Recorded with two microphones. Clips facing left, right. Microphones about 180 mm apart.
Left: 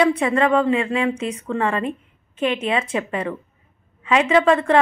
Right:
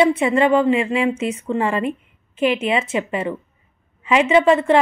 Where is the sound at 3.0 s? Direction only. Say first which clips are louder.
Right 2 dB; 20° right (ahead or behind).